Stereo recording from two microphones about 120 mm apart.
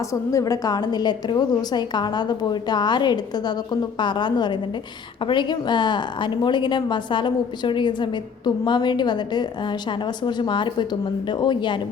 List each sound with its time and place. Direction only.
0.1 s a woman's voice: 25° left (ahead or behind)